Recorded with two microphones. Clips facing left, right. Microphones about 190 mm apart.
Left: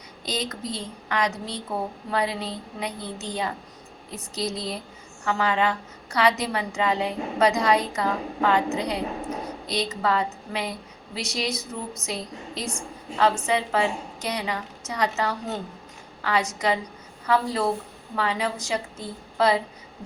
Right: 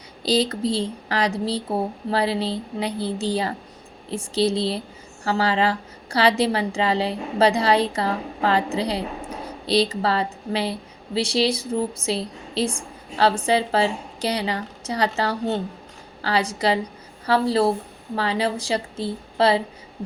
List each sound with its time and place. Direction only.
0.2 s a woman's voice: 30° right (ahead or behind)